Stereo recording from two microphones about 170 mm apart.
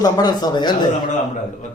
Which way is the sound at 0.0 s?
25° left (ahead or behind).